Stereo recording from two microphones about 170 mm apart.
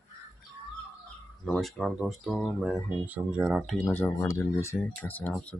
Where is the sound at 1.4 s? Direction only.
Centre (ahead or behind).